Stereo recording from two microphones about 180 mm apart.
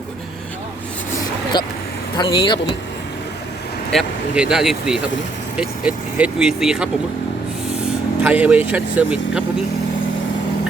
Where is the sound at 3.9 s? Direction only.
Centre (ahead or behind).